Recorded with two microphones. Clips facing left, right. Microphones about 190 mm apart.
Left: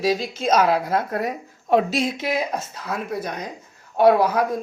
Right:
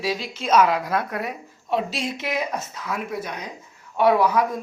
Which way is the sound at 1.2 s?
50° left (ahead or behind).